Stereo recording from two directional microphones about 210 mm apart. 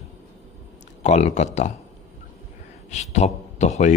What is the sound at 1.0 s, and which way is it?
Speech, 35° left (ahead or behind).